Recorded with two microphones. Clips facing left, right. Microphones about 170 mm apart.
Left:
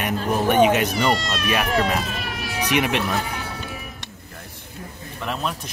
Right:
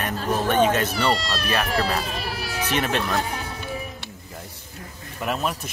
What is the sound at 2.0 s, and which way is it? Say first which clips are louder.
Emergency vehicle: even; 35° right (ahead or behind).